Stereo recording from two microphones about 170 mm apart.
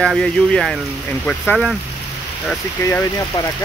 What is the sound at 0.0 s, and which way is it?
Speech, 5° left (ahead or behind).